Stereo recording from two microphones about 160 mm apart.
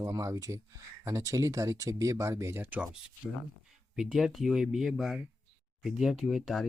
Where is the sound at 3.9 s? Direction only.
5° right (ahead or behind).